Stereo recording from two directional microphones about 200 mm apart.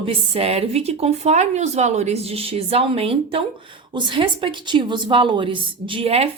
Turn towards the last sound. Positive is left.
turn(degrees=-30)  # may be behind; listen again after turning